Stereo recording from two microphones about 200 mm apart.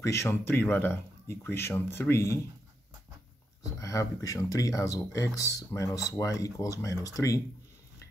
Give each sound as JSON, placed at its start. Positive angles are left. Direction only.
{"t": 0.0, "sound": "speech", "side_deg": 15}
{"t": 3.8, "sound": "speech", "side_deg": 15}